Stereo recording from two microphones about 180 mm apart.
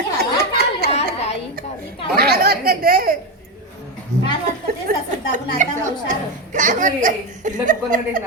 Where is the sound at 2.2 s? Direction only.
60° right (ahead or behind).